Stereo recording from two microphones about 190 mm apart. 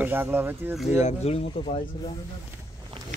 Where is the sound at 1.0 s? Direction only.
35° left (ahead or behind).